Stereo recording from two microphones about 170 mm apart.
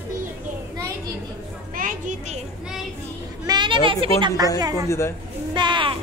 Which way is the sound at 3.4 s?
25° right (ahead or behind).